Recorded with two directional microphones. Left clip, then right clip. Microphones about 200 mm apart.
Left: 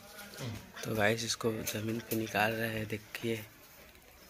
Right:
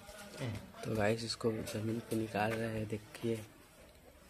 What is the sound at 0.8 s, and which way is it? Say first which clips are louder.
Speech: left 4 dB; centre (ahead or behind).